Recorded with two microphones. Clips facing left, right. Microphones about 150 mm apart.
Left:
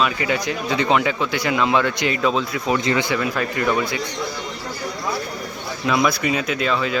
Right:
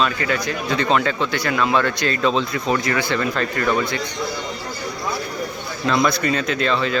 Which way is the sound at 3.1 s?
10° left (ahead or behind).